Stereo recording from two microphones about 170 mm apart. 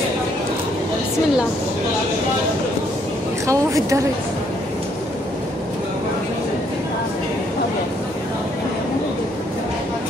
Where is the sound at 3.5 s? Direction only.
20° right (ahead or behind).